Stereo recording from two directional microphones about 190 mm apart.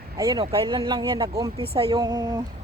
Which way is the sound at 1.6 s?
30° right (ahead or behind).